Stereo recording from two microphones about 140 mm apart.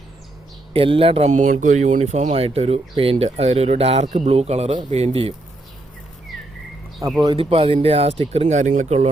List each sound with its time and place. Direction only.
0.7 s speech: 40° right (ahead or behind)
1.3 s speech: 65° right (ahead or behind); by 5.3 s 45° right (ahead or behind)
7.2 s speech: 40° right (ahead or behind); by 9.0 s 55° right (ahead or behind)